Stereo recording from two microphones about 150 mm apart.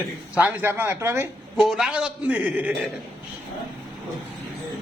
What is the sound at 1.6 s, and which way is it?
A man's voice, 5° right (ahead or behind).